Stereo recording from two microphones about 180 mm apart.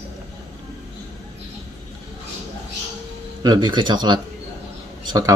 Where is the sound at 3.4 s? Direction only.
25° right (ahead or behind).